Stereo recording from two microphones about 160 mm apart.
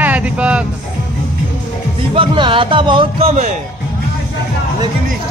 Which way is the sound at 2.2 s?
30° right (ahead or behind).